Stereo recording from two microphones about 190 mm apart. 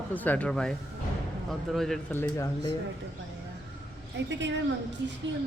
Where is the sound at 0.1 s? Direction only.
10° left (ahead or behind).